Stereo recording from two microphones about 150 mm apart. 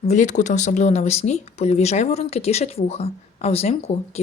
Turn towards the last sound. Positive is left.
turn(degrees=40)  # may be behind; listen again after turning